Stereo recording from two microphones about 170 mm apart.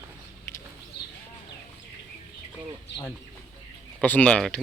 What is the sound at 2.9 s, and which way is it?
Chicken, 80° left.